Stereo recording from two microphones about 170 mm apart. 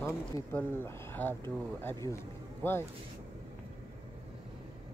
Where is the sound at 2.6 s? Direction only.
15° left (ahead or behind).